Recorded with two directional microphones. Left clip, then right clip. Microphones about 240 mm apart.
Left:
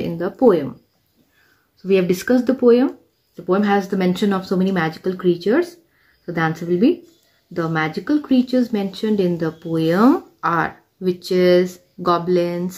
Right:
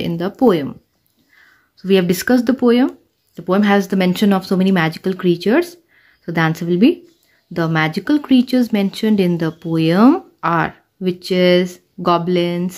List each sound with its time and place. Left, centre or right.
0.0 s speech: right
1.8 s speech: right